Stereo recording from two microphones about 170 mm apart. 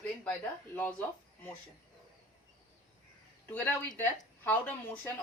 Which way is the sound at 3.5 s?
10° left (ahead or behind).